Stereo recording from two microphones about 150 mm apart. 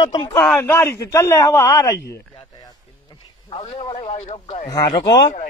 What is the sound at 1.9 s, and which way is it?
Speech, 90° left.